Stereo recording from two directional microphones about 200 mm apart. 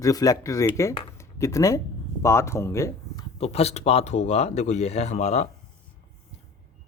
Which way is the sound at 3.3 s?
30° left (ahead or behind).